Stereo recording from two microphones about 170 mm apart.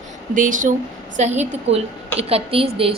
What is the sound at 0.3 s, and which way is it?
A woman's voice, 50° right (ahead or behind).